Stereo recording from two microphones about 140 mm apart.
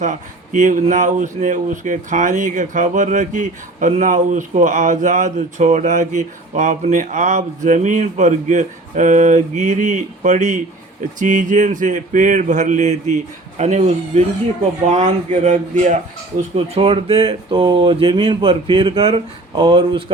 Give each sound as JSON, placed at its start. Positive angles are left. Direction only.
{"t": 0.0, "sound": "speech", "side_deg": -60}
{"t": 16.6, "sound": "speech", "side_deg": -40}